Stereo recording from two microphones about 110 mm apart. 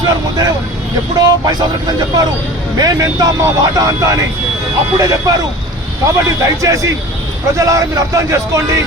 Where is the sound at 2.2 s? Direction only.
35° right (ahead or behind).